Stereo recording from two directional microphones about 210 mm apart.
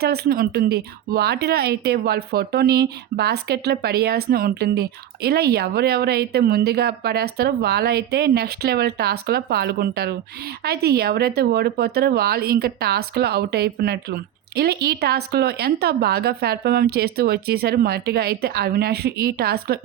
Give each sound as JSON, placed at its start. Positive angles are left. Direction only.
{"t": 0.0, "sound": "speech", "side_deg": -45}